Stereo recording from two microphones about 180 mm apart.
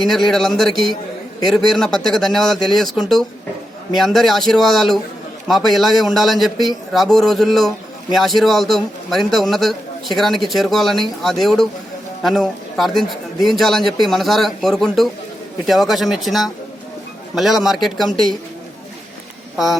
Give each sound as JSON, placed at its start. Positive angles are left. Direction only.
{"t": 0.0, "sound": "a man's voice", "side_deg": 0}
{"t": 19.5, "sound": "a man's voice", "side_deg": 0}